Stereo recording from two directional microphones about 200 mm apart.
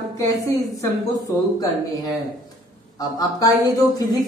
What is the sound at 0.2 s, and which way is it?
Speech, 15° left (ahead or behind).